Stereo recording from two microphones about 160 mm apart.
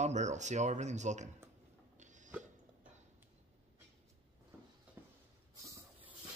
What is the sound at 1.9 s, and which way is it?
Hiccup, 50° right (ahead or behind).